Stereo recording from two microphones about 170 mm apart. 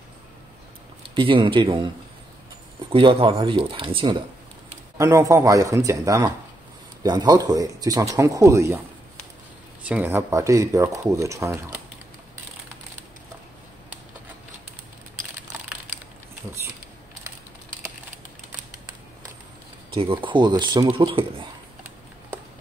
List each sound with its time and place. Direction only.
1.1 s speech: 30° right (ahead or behind)
2.9 s speech: 30° right (ahead or behind)
4.9 s speech: 20° right (ahead or behind)
9.8 s speech: 10° right (ahead or behind)
19.9 s speech: 30° right (ahead or behind)